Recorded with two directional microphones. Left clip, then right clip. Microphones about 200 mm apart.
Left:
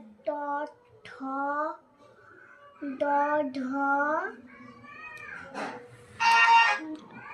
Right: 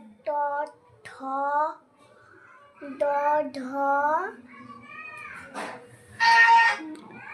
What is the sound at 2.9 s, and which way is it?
Child singing, 30° right (ahead or behind).